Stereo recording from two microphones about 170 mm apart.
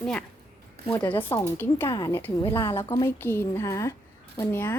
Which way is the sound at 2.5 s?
30° left (ahead or behind).